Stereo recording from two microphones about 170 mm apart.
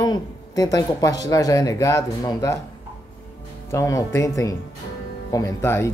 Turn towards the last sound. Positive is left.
turn(degrees=15)  # may be behind; listen again after turning